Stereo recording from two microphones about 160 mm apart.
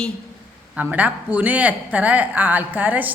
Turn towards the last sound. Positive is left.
turn(degrees=-10)  # may be behind; listen again after turning